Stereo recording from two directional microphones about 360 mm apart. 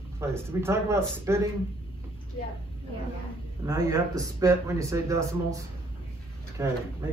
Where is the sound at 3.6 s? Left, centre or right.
Centre.